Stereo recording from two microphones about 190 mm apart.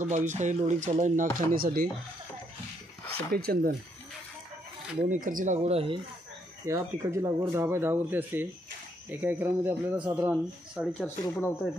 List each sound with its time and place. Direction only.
0.0 s speech: 40° right (ahead or behind)
3.3 s speech: 55° right (ahead or behind)
5.1 s speech: 45° right (ahead or behind)
6.6 s speech: 15° right (ahead or behind); by 11.5 s 10° left (ahead or behind)